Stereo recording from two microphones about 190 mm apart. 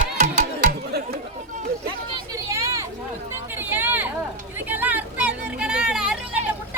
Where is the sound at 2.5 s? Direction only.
15° right (ahead or behind).